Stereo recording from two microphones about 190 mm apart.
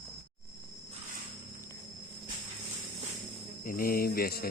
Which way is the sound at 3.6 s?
50° left (ahead or behind).